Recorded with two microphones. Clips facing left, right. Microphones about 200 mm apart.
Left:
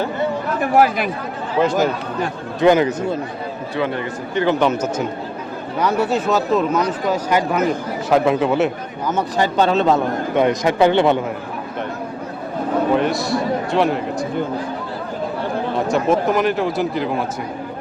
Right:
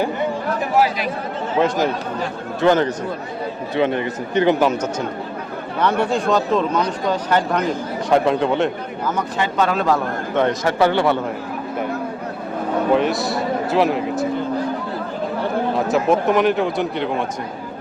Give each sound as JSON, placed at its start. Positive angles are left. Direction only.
{"t": 0.6, "sound": "speech", "side_deg": 50}
{"t": 2.6, "sound": "speech", "side_deg": 10}
{"t": 3.8, "sound": "speech", "side_deg": -20}
{"t": 4.6, "sound": "a man's voice", "side_deg": 5}
{"t": 9.4, "sound": "a man's voice", "side_deg": 30}
{"t": 12.9, "sound": "a man's voice", "side_deg": 0}
{"t": 15.9, "sound": "a man's voice", "side_deg": 0}